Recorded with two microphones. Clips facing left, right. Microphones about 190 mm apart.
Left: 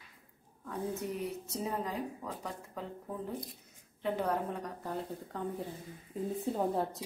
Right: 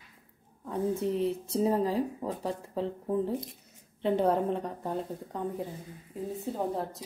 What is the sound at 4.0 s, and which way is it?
Speech, 30° right (ahead or behind).